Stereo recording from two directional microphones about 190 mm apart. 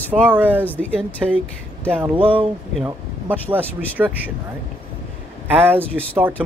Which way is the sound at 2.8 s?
10° right (ahead or behind).